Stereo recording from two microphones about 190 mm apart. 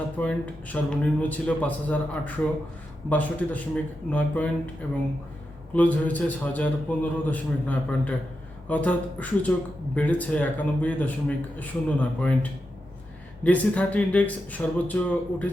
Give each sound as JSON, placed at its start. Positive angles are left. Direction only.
{"t": 0.2, "sound": "speech", "side_deg": 5}
{"t": 5.7, "sound": "speech", "side_deg": 10}